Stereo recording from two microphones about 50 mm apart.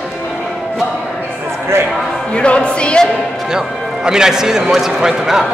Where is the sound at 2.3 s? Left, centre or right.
Left.